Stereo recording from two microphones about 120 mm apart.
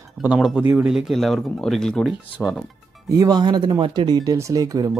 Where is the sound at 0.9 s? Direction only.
5° right (ahead or behind).